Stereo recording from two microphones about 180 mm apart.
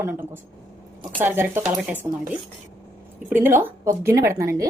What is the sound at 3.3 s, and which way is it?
A woman's voice, 10° right (ahead or behind).